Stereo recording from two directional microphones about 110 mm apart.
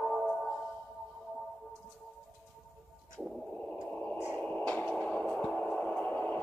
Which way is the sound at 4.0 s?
20° left (ahead or behind).